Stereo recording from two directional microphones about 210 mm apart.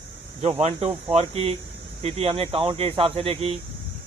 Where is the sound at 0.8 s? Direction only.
30° right (ahead or behind).